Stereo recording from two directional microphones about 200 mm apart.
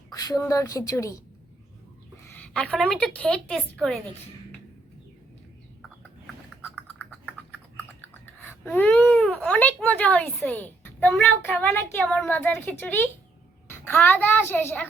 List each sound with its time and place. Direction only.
0.1 s a child's voice: 20° left (ahead or behind)
2.2 s a woman's voice: 10° left (ahead or behind)
6.0 s a sound: 10° left (ahead or behind)
8.0 s a child's voice: 10° left (ahead or behind)